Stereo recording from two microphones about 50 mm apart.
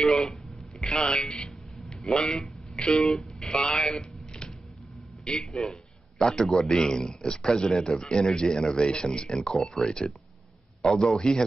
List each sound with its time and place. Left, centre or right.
0.0 s telephone: centre
0.9 s speech: centre
1.8 s a sound: centre
2.8 s speech: centre
3.1 s speech: centre
3.6 s a sound: centre
5.2 s a man's voice: centre
9.5 s speech: centre
9.8 s speech: centre